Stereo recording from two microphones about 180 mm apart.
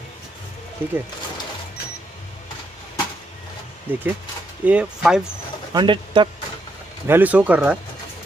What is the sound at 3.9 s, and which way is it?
Speech, 10° right (ahead or behind).